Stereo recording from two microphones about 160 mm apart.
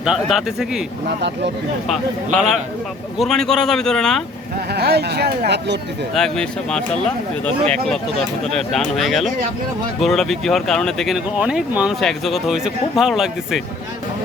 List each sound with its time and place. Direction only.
0.0 s speech: 5° right (ahead or behind)
1.9 s speech: centre (ahead or behind)
4.7 s speech: 90° right
6.1 s speech: 5° left (ahead or behind)
8.5 s speech: centre (ahead or behind)